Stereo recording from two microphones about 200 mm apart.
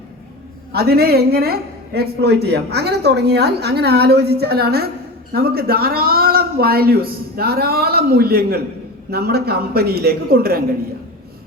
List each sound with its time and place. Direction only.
0.7 s a woman's voice: 50° right (ahead or behind)